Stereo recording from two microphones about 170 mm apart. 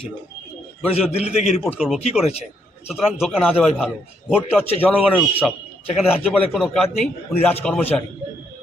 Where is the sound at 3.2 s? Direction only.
5° right (ahead or behind).